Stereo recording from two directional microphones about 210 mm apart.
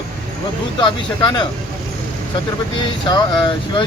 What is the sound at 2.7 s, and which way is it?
Speech, 20° left (ahead or behind).